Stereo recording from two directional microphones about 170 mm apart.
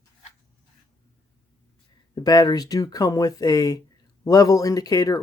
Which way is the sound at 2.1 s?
25° left (ahead or behind).